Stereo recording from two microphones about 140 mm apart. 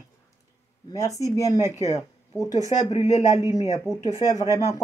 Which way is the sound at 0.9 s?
20° left (ahead or behind).